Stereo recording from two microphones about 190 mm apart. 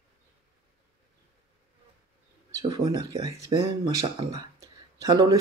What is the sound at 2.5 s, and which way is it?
Speech, 20° right (ahead or behind).